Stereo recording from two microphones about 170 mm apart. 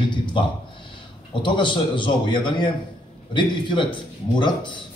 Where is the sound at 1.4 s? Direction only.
30° left (ahead or behind).